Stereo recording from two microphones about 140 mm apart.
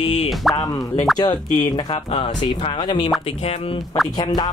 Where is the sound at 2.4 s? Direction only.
35° left (ahead or behind).